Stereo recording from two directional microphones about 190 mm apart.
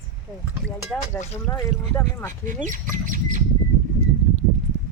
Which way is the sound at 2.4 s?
45° right (ahead or behind).